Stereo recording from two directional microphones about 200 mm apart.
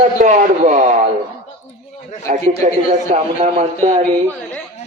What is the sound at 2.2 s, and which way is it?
A man's voice, 35° right (ahead or behind).